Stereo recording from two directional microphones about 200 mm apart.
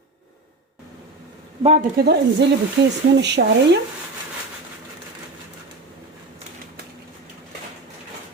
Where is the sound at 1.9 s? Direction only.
55° right (ahead or behind).